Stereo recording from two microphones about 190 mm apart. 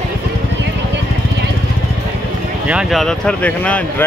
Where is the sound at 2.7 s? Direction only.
Centre (ahead or behind).